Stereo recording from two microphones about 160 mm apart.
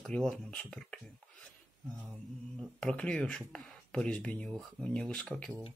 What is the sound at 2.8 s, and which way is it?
Speech, 5° left (ahead or behind).